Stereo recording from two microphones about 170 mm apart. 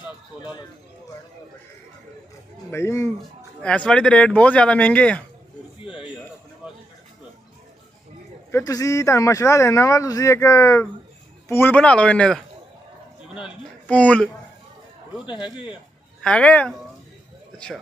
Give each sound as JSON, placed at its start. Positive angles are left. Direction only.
{"t": 2.7, "sound": "speech", "side_deg": 15}
{"t": 8.5, "sound": "speech", "side_deg": 15}
{"t": 13.8, "sound": "speech", "side_deg": 10}
{"t": 15.2, "sound": "a man's voice", "side_deg": 30}
{"t": 16.2, "sound": "speech", "side_deg": 5}